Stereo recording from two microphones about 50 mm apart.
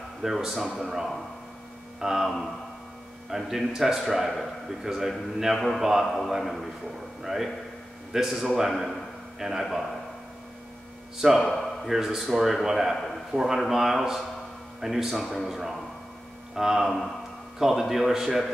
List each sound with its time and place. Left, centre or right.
0.2 s a man's voice: centre
11.1 s speech: centre
11.9 s a man's voice: centre